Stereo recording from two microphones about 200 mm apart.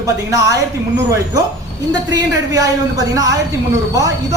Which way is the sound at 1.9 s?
15° right (ahead or behind).